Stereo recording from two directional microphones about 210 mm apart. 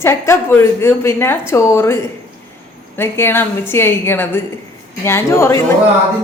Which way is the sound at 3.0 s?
10° left (ahead or behind).